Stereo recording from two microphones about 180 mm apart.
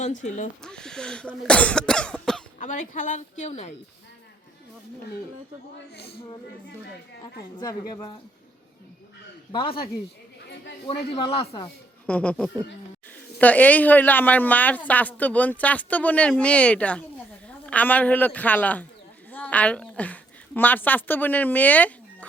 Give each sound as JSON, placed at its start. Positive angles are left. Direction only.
{"t": 0.0, "sound": "a woman's voice", "side_deg": 40}
{"t": 0.6, "sound": "cough", "side_deg": 5}
{"t": 2.6, "sound": "a woman's voice", "side_deg": 45}
{"t": 7.6, "sound": "a woman's voice", "side_deg": 20}
{"t": 9.5, "sound": "a woman's voice", "side_deg": 30}
{"t": 10.8, "sound": "speech", "side_deg": 35}
{"t": 12.0, "sound": "a woman's voice", "side_deg": 10}